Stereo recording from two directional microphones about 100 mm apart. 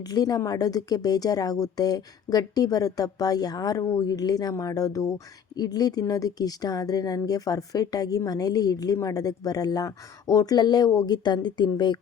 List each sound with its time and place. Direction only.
0.1 s a woman's voice: 40° left (ahead or behind)